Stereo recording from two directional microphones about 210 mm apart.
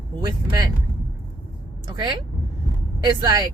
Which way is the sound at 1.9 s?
20° right (ahead or behind).